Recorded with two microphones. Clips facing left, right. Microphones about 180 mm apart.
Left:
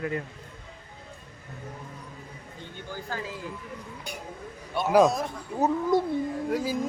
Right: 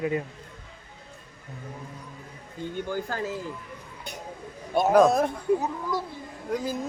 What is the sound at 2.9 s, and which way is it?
Speech, 50° right (ahead or behind).